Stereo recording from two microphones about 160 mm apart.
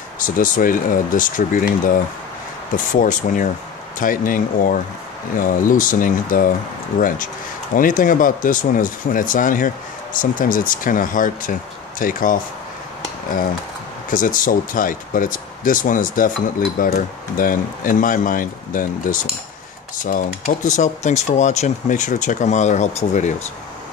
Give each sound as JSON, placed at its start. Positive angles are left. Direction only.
{"t": 0.4, "sound": "speech", "side_deg": 60}
{"t": 14.1, "sound": "speech", "side_deg": 55}